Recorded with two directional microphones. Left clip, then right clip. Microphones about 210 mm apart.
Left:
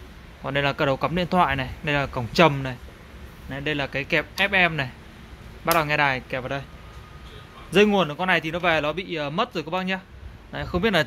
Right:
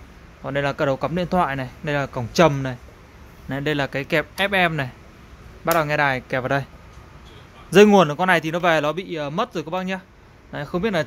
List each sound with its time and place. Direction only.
0.4 s speech: 5° right (ahead or behind); by 6.6 s 20° right (ahead or behind)
7.7 s speech: 25° right (ahead or behind); by 11.1 s 5° right (ahead or behind)